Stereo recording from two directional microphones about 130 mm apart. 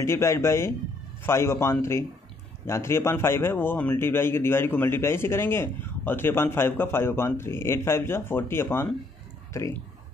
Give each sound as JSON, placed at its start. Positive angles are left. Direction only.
{"t": 0.0, "sound": "a man's voice", "side_deg": 20}